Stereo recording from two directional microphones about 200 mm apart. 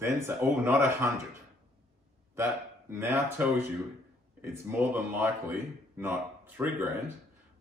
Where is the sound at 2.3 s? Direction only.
15° right (ahead or behind).